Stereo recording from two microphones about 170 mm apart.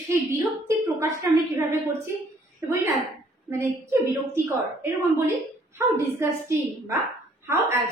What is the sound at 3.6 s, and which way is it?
A woman's voice, 15° right (ahead or behind).